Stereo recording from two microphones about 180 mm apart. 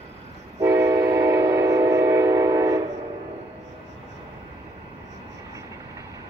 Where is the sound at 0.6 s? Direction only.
15° right (ahead or behind).